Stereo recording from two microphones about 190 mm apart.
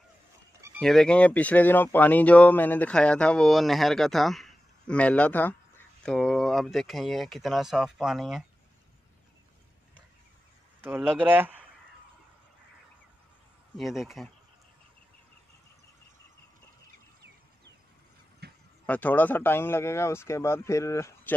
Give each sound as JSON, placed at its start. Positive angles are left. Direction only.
{"t": 0.7, "sound": "speech", "side_deg": 5}
{"t": 10.8, "sound": "speech", "side_deg": -10}
{"t": 13.7, "sound": "speech", "side_deg": 0}
{"t": 18.4, "sound": "a sound", "side_deg": -60}
{"t": 18.9, "sound": "speech", "side_deg": 10}